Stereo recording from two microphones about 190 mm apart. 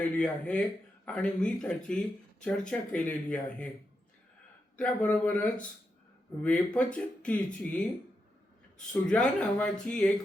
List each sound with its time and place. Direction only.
0.0 s speech: 5° left (ahead or behind)
4.8 s speech: 5° left (ahead or behind)
8.9 s speech: 5° left (ahead or behind)